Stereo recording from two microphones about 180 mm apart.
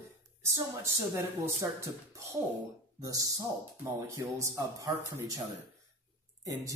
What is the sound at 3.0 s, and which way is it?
Speech, 20° right (ahead or behind).